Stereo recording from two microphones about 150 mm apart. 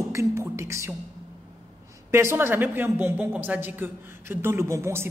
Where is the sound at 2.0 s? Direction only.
15° right (ahead or behind).